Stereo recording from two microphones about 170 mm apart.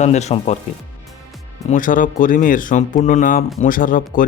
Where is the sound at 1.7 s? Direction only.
50° left (ahead or behind).